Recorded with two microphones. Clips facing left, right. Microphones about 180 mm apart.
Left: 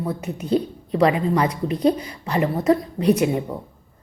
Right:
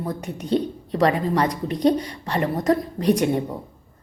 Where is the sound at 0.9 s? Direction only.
35° right (ahead or behind).